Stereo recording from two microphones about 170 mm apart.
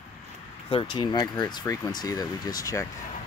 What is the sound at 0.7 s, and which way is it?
Speech, 30° left (ahead or behind).